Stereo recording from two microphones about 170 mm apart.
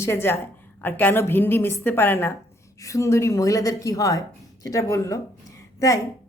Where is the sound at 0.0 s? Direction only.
15° left (ahead or behind).